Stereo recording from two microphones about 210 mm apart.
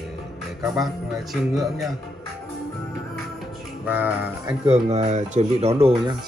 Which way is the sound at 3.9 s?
10° right (ahead or behind).